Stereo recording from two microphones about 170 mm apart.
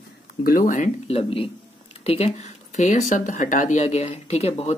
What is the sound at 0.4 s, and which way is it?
Speech, 55° left (ahead or behind).